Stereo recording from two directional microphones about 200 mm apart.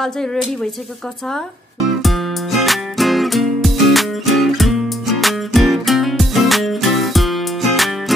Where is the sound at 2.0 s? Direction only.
Centre (ahead or behind).